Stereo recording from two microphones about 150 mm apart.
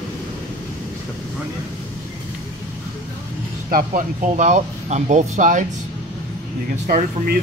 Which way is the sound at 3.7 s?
55° right (ahead or behind).